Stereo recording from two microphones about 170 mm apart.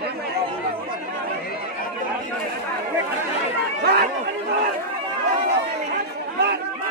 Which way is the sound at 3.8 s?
70° right (ahead or behind).